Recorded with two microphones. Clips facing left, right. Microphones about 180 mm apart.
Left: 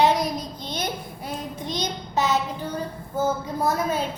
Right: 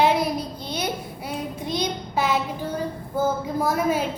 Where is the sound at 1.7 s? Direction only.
10° right (ahead or behind).